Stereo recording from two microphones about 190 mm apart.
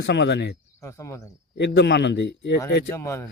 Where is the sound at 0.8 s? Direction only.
15° left (ahead or behind).